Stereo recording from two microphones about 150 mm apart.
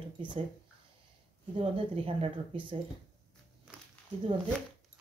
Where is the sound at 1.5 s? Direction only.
35° right (ahead or behind).